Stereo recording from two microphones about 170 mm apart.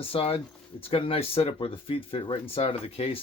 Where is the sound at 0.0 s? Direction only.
35° left (ahead or behind).